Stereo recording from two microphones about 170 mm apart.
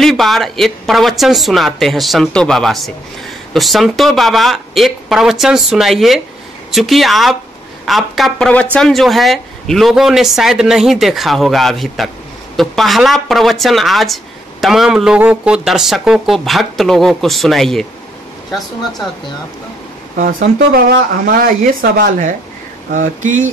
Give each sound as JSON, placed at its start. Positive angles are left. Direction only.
{"t": 0.0, "sound": "a woman's voice", "side_deg": 0}
{"t": 20.2, "sound": "speech", "side_deg": -55}